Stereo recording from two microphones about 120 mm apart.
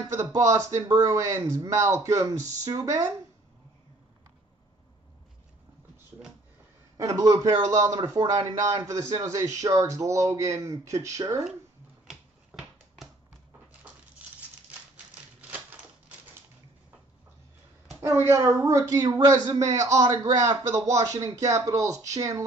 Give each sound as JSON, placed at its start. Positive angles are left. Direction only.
{"t": 0.0, "sound": "a woman's voice", "side_deg": -30}
{"t": 7.0, "sound": "a woman's voice", "side_deg": -30}
{"t": 12.1, "sound": "finger snapping", "side_deg": -5}
{"t": 18.0, "sound": "a woman's voice", "side_deg": -20}